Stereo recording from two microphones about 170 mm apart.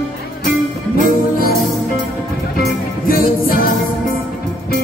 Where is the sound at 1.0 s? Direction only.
55° left (ahead or behind).